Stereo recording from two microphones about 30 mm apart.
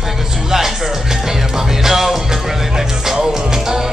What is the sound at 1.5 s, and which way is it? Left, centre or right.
Music, centre.